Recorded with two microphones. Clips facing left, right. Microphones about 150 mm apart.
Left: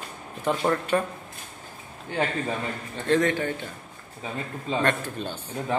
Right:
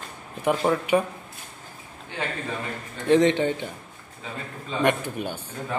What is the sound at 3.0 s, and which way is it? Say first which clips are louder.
Speech: right 4 dB; 20° right (ahead or behind).